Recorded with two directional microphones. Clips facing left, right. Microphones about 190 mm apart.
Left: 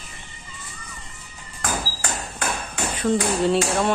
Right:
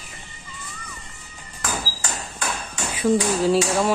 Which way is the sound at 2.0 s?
55° left (ahead or behind).